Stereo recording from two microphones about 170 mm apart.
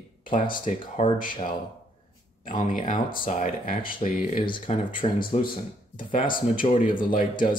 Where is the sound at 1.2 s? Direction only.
55° left (ahead or behind).